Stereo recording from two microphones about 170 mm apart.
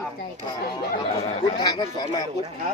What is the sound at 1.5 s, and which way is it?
Speech, 25° left (ahead or behind).